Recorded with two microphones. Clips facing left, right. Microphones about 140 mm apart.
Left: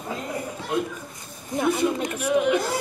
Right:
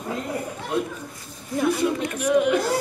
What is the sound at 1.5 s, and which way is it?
Speech, 15° left (ahead or behind).